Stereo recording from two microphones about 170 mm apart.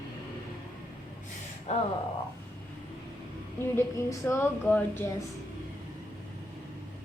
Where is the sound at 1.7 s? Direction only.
40° left (ahead or behind).